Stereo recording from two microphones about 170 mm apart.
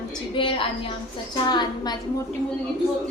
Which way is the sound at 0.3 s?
30° left (ahead or behind).